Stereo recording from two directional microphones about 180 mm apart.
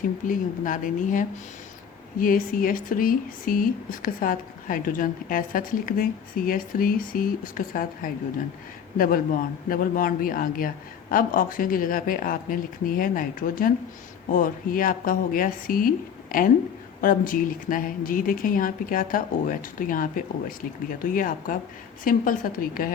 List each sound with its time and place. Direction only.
0.3 s speech: 45° left (ahead or behind)